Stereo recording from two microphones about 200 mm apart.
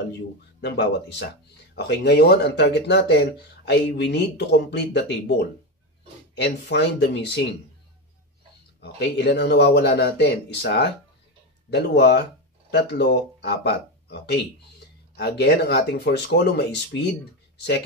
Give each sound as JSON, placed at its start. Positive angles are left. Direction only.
{"t": 0.6, "sound": "speech", "side_deg": 60}
{"t": 8.8, "sound": "speech", "side_deg": 55}